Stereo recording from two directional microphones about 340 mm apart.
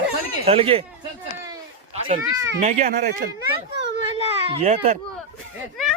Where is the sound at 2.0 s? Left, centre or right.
Centre.